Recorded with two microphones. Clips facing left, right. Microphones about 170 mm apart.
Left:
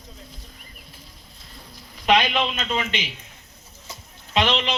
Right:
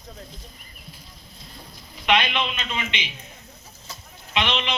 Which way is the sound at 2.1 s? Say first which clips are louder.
Left 3 dB; 40° left (ahead or behind).